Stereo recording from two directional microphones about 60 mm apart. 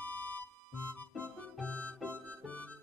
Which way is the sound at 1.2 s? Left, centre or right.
Centre.